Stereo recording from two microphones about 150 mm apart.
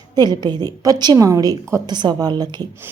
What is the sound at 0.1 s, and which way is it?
Speech, 30° right (ahead or behind).